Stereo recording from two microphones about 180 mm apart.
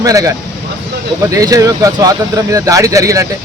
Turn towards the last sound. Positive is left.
turn(degrees=-15)  # may be behind; listen again after turning